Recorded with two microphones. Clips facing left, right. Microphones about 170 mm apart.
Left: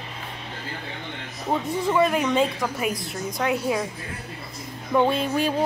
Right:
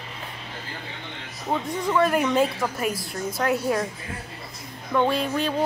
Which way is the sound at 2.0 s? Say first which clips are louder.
Right 2 dB; 5° right (ahead or behind).